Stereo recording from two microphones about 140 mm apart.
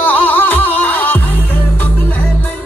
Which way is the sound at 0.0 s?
15° left (ahead or behind).